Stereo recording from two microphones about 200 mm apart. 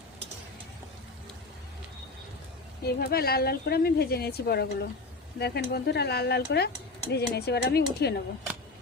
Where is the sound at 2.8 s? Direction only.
50° left (ahead or behind).